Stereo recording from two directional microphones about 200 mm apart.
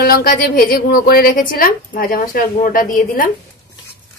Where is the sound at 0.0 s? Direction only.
50° left (ahead or behind).